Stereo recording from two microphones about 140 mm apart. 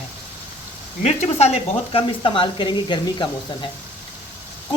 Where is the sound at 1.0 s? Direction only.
50° left (ahead or behind); by 3.7 s 35° left (ahead or behind).